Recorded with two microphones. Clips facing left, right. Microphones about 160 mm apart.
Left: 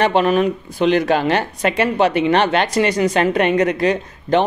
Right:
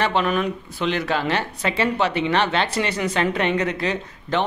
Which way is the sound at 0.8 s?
50° left (ahead or behind).